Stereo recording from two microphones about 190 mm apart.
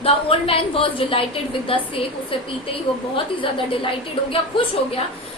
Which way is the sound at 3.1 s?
25° left (ahead or behind).